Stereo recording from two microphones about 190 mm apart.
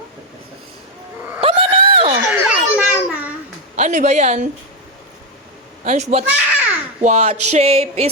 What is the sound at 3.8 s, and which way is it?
Speech, 40° right (ahead or behind).